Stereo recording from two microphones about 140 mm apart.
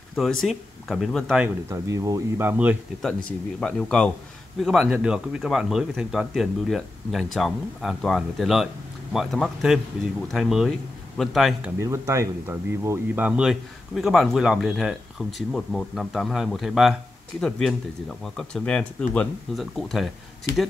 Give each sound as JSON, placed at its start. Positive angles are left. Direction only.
{"t": 0.1, "sound": "speech", "side_deg": 0}
{"t": 1.7, "sound": "speech", "side_deg": -20}
{"t": 3.3, "sound": "speech", "side_deg": 10}
{"t": 11.8, "sound": "speech", "side_deg": -20}